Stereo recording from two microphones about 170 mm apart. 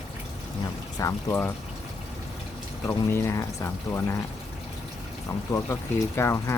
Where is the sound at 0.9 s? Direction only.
15° left (ahead or behind).